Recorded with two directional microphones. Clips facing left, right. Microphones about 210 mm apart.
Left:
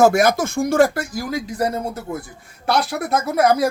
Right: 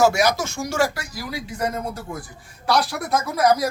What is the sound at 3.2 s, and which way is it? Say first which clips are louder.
Speech: left 2 dB; 25° left (ahead or behind).